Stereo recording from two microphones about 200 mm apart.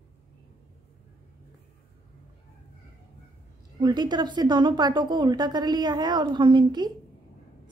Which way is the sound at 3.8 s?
20° right (ahead or behind).